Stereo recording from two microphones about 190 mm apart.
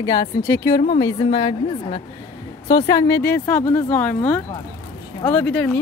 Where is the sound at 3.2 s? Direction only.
10° left (ahead or behind).